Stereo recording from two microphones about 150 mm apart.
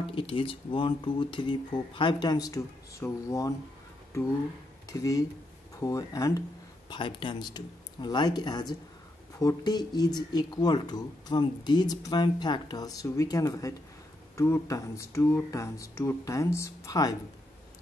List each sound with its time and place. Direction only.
0.0 s speech: 35° left (ahead or behind)
4.8 s speech: 20° left (ahead or behind)